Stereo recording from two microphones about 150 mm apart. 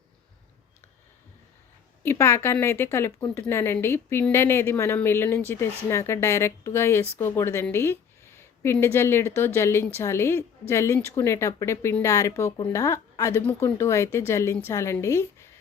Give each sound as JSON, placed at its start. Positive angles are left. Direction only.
{"t": 2.0, "sound": "a woman's voice", "side_deg": 15}